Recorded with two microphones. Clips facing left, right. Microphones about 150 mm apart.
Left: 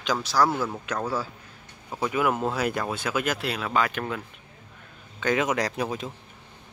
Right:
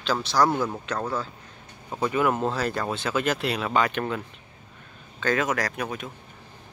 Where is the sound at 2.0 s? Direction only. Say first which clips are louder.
Right 1 dB; 5° left (ahead or behind).